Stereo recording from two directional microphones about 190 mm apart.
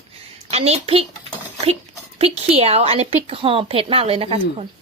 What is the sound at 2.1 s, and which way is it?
A woman's voice, 30° right (ahead or behind).